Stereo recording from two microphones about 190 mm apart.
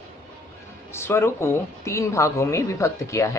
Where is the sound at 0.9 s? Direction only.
15° left (ahead or behind).